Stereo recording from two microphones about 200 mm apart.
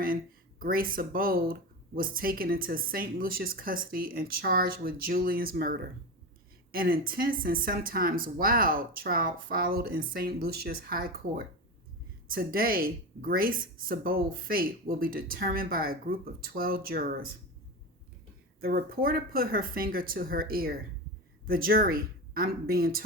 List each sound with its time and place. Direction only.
0.6 s speech: 45° right (ahead or behind)
18.6 s speech: 45° right (ahead or behind)